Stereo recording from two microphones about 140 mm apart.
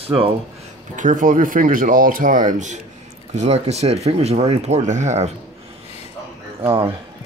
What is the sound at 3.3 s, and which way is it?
Speech, 50° right (ahead or behind).